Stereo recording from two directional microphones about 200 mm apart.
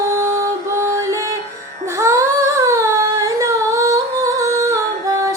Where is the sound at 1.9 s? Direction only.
15° right (ahead or behind).